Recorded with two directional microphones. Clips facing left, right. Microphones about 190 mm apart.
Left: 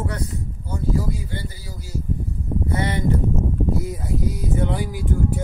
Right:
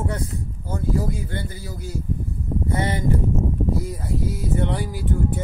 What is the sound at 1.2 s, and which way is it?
Speech, 55° right (ahead or behind).